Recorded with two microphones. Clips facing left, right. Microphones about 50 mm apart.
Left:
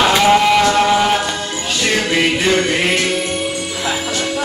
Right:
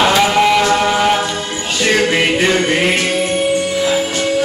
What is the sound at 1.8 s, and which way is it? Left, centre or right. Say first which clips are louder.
Music: right 3 dB; right.